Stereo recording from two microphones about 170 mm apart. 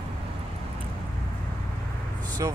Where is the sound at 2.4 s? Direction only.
20° right (ahead or behind).